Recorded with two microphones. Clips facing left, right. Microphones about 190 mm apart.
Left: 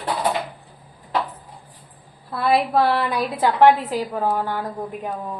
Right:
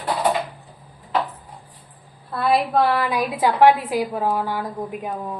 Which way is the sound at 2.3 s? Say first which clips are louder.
Even; centre (ahead or behind).